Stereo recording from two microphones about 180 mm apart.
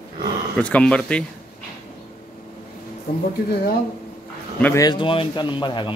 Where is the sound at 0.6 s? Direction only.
5° left (ahead or behind).